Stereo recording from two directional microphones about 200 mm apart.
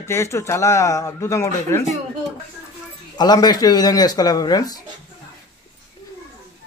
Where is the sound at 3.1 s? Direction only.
20° left (ahead or behind).